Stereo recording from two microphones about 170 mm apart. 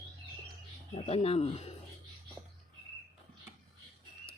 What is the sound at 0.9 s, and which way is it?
Speech, 35° left (ahead or behind).